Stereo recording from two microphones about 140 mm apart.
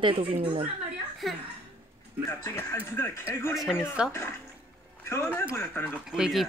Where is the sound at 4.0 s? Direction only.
5° right (ahead or behind).